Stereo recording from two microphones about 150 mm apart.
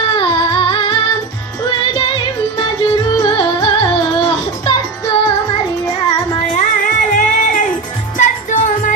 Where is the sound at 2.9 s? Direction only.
30° left (ahead or behind).